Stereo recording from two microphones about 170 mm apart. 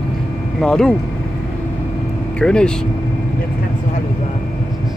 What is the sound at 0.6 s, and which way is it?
Speech, 5° left (ahead or behind).